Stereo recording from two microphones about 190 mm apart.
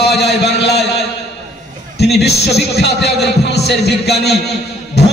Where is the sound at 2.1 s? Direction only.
60° left (ahead or behind).